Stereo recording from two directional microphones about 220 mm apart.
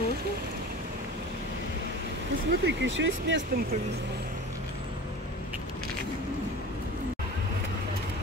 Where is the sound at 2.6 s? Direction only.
55° right (ahead or behind).